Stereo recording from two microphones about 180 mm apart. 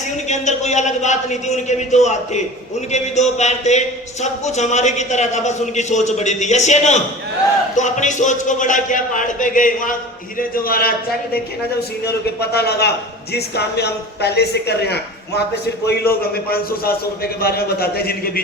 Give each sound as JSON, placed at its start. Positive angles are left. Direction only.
{"t": 0.3, "sound": "speech", "side_deg": 40}
{"t": 12.0, "sound": "a man's voice", "side_deg": 65}
{"t": 16.2, "sound": "a man's voice", "side_deg": 55}